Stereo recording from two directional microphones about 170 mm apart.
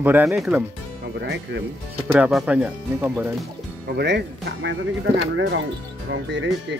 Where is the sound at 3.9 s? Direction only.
80° right.